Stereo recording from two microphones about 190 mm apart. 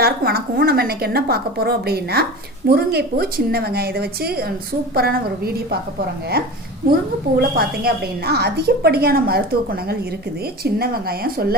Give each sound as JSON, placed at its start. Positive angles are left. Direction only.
{"t": 0.0, "sound": "a woman's voice", "side_deg": -55}
{"t": 7.3, "sound": "a woman's voice", "side_deg": -55}